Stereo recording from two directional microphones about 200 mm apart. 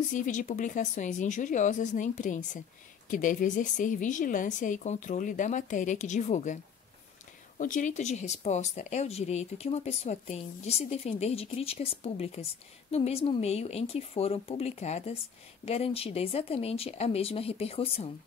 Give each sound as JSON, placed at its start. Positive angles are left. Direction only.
{"t": 0.1, "sound": "speech", "side_deg": 40}